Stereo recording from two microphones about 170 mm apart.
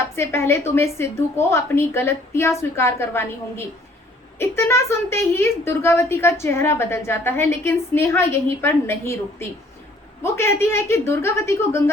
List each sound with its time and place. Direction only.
0.2 s speech: 15° left (ahead or behind)